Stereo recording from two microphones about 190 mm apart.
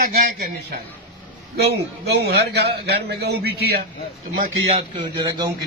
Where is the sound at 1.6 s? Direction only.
60° right (ahead or behind).